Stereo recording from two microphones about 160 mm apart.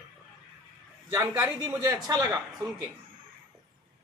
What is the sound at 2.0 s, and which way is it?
Speech, 25° right (ahead or behind).